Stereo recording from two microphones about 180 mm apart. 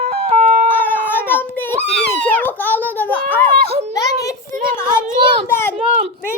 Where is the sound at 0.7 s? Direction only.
10° left (ahead or behind).